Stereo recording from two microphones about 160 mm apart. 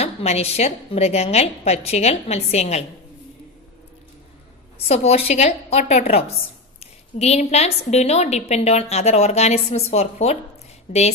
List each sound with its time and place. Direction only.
0.0 s a woman's voice: 40° left (ahead or behind)
4.7 s a woman's voice: 40° left (ahead or behind)
10.9 s a woman's voice: 50° left (ahead or behind)